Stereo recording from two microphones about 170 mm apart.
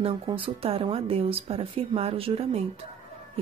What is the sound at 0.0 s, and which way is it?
Speech, 30° right (ahead or behind).